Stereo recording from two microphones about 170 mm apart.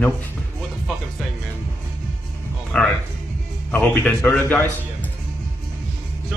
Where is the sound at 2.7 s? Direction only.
5° left (ahead or behind).